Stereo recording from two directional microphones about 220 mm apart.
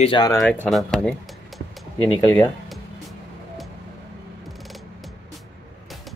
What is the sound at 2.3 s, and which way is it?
Speech, 10° left (ahead or behind).